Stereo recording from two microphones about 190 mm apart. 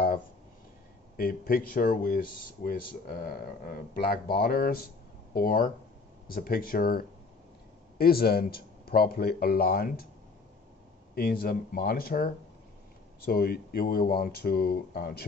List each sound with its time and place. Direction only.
1.1 s speech: 50° left (ahead or behind)
11.1 s speech: 50° left (ahead or behind)